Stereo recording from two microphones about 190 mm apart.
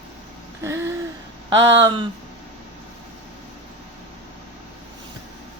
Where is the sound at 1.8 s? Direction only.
25° right (ahead or behind).